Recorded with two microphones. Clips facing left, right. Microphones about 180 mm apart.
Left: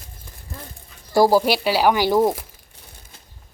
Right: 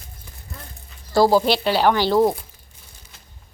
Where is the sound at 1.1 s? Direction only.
10° left (ahead or behind).